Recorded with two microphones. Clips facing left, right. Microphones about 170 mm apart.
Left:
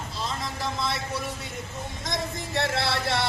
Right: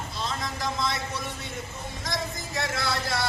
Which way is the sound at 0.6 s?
Centre (ahead or behind).